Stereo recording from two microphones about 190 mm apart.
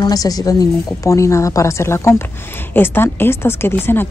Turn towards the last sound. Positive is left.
turn(degrees=10)  # may be behind; listen again after turning